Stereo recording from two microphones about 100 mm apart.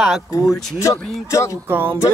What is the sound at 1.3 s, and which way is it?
Speech, 30° left (ahead or behind).